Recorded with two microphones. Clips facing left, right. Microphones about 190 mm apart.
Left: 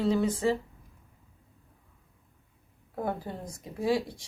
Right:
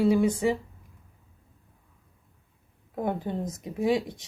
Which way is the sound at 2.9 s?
20° right (ahead or behind).